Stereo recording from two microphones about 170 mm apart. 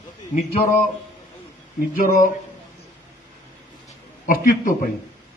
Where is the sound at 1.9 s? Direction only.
50° left (ahead or behind).